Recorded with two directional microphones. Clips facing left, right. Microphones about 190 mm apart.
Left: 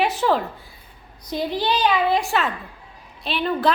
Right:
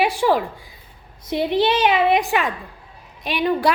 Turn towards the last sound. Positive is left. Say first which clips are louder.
# right 2 dB
turn(degrees=-15)  # may be behind; listen again after turning